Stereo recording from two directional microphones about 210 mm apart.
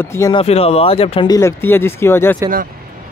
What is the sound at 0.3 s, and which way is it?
Speech, 25° left (ahead or behind).